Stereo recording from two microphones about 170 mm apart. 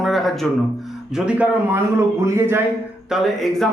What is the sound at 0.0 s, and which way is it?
Speech, centre (ahead or behind).